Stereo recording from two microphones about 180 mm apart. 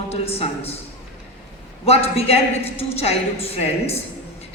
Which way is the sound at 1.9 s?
35° left (ahead or behind).